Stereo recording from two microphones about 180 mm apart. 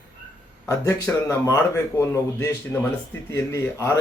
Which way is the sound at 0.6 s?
15° left (ahead or behind).